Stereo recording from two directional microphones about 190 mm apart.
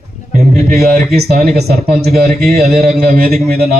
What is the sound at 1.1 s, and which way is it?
Speech, 55° right (ahead or behind).